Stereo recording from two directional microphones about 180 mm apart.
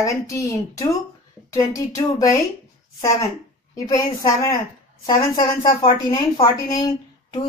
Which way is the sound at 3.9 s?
20° left (ahead or behind).